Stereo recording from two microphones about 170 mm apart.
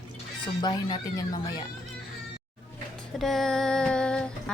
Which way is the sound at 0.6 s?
25° left (ahead or behind).